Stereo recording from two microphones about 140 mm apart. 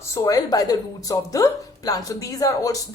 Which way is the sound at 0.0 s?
25° left (ahead or behind).